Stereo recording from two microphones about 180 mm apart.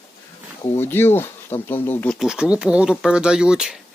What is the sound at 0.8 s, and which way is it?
Speech, 10° left (ahead or behind).